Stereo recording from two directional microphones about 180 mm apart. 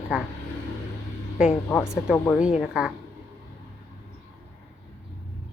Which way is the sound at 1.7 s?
15° left (ahead or behind).